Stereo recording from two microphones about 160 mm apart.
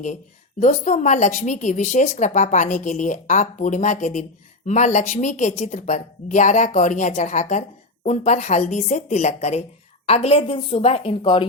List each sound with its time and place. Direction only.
0.6 s a woman's voice: 50° left (ahead or behind); by 11.4 s 30° left (ahead or behind)